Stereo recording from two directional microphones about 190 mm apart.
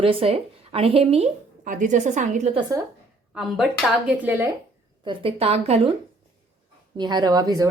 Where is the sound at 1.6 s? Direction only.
45° right (ahead or behind).